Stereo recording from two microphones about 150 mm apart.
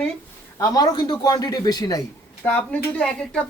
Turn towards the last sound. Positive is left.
turn(degrees=10)  # may be behind; listen again after turning